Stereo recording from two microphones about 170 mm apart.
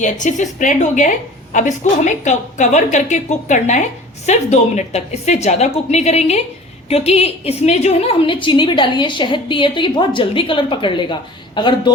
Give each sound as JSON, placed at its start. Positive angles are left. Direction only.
{"t": 0.0, "sound": "a woman's voice", "side_deg": 45}